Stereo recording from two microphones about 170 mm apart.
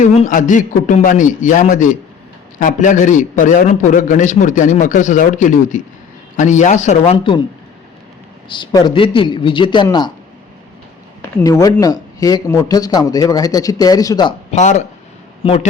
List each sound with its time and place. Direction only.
0.0 s a man's voice: 45° left (ahead or behind)
8.4 s speech: 30° left (ahead or behind)
11.2 s speech: 15° left (ahead or behind)
14.5 s a man's voice: 45° left (ahead or behind)
15.4 s speech: 30° left (ahead or behind)